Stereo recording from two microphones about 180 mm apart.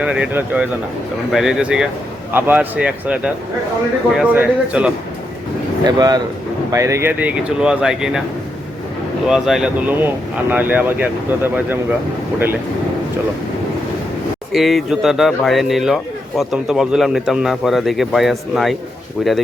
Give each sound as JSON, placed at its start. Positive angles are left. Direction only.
{"t": 0.0, "sound": "speech", "side_deg": -5}
{"t": 4.2, "sound": "speech", "side_deg": -10}
{"t": 5.8, "sound": "speech", "side_deg": -20}
{"t": 9.3, "sound": "speech", "side_deg": 0}
{"t": 14.5, "sound": "speech", "side_deg": 0}